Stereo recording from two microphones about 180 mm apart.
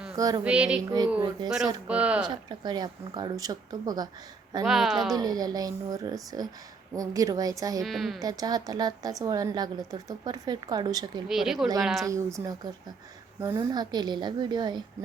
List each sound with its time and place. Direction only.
0.2 s a woman's voice: 20° right (ahead or behind)
0.4 s speech: 5° right (ahead or behind)
1.9 s a woman's voice: 5° right (ahead or behind)
2.3 s a woman's voice: 25° right (ahead or behind)
4.6 s speech: centre (ahead or behind)
5.1 s a woman's voice: 20° right (ahead or behind)
7.9 s speech: centre (ahead or behind)
8.2 s a woman's voice: 20° right (ahead or behind)
11.3 s speech: centre (ahead or behind)
12.0 s a woman's voice: 15° right (ahead or behind)